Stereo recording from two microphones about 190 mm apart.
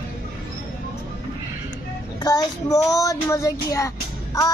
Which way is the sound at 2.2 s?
20° left (ahead or behind).